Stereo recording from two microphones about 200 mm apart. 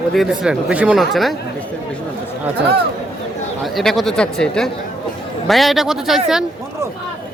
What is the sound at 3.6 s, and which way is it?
Speech, centre (ahead or behind).